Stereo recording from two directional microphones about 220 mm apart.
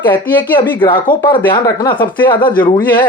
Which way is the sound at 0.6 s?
20° left (ahead or behind).